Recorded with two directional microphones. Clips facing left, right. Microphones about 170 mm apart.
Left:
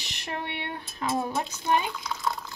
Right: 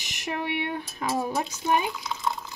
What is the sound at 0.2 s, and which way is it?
Speech, 15° right (ahead or behind).